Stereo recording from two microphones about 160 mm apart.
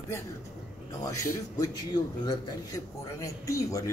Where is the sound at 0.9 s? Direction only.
20° left (ahead or behind).